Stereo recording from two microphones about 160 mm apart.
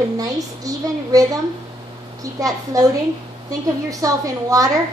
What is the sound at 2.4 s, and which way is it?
Speech, 20° right (ahead or behind).